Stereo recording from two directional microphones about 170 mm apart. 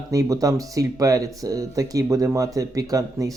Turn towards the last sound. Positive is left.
turn(degrees=-20)  # may be behind; listen again after turning